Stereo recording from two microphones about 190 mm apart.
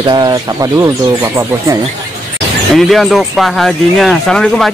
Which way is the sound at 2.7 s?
Centre (ahead or behind).